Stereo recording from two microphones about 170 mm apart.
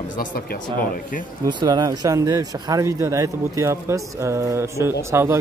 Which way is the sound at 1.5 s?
25° right (ahead or behind).